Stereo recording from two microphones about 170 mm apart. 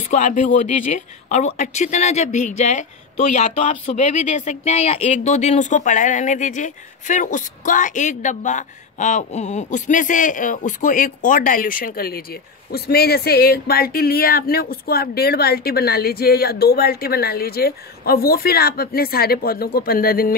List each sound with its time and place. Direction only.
0.1 s speech: 45° left (ahead or behind)